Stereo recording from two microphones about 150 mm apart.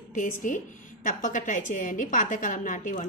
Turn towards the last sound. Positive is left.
turn(degrees=60)  # may be behind; listen again after turning